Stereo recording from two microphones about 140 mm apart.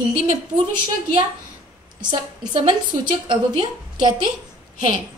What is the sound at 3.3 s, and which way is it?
A woman's voice, 30° right (ahead or behind).